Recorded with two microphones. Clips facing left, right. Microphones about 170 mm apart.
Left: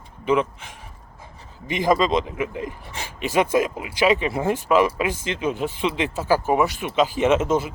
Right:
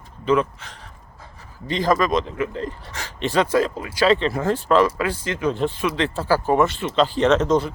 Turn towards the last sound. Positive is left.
turn(degrees=5)  # may be behind; listen again after turning